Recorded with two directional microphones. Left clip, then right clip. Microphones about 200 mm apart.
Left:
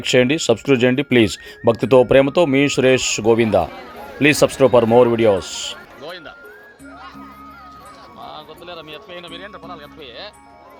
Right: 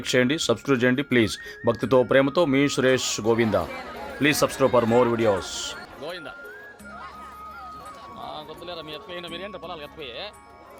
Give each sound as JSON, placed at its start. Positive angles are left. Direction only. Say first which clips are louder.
{"t": 0.0, "sound": "speech", "louder": "left 7 dB", "side_deg": 15}
{"t": 6.0, "sound": "music", "louder": "left 2 dB", "side_deg": -5}
{"t": 8.2, "sound": "music", "louder": "left 2 dB", "side_deg": 0}